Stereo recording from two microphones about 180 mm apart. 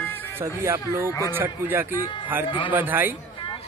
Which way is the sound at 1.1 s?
20° left (ahead or behind).